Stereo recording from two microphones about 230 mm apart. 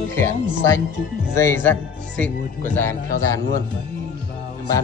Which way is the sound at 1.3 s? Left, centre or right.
Centre.